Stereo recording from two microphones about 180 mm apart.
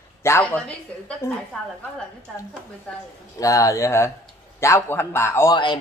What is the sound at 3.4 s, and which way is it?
Speech, 20° left (ahead or behind).